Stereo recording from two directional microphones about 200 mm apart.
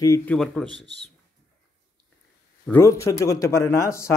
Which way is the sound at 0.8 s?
60° right (ahead or behind).